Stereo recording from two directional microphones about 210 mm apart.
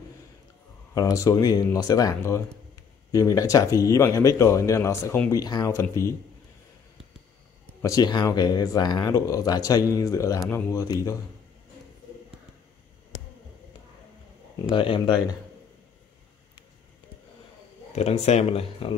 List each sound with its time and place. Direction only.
0.9 s speech: 15° left (ahead or behind)
7.8 s speech: 15° left (ahead or behind)
14.7 s speech: 25° left (ahead or behind)
17.9 s speech: 30° left (ahead or behind)